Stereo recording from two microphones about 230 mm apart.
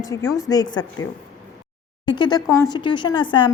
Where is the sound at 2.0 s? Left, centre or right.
Centre.